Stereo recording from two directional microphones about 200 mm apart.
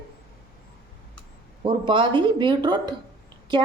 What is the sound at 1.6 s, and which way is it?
A woman's voice, 25° right (ahead or behind).